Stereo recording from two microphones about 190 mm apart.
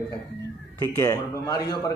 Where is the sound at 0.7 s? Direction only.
15° left (ahead or behind).